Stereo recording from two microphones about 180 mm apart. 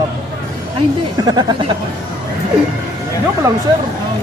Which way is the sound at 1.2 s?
25° right (ahead or behind).